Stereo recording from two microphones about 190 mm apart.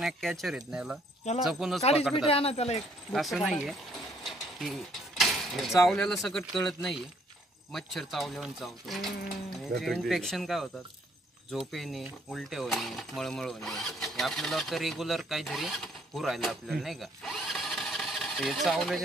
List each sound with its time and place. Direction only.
0.0 s speech: centre (ahead or behind)
1.8 s speech: 35° left (ahead or behind)
3.1 s speech: centre (ahead or behind)
4.2 s mechanisms: centre (ahead or behind)
5.9 s speech: centre (ahead or behind)